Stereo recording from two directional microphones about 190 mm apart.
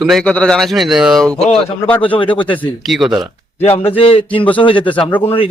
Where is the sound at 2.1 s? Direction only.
25° left (ahead or behind).